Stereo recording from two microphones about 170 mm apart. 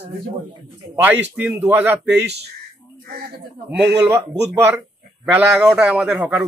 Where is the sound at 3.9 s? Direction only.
20° right (ahead or behind).